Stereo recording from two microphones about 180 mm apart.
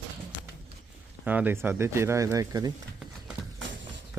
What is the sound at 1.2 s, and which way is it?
Speech, 10° right (ahead or behind).